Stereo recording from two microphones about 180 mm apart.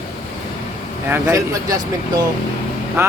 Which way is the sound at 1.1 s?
15° right (ahead or behind).